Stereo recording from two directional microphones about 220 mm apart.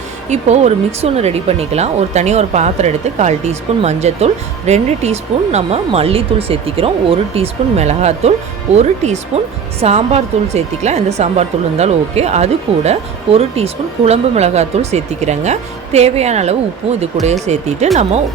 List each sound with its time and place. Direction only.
0.3 s speech: 30° right (ahead or behind)